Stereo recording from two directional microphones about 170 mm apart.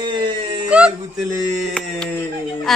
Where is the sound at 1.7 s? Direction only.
5° left (ahead or behind).